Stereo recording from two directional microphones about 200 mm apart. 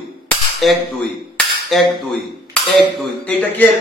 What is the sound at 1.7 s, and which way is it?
Cutlery, centre (ahead or behind).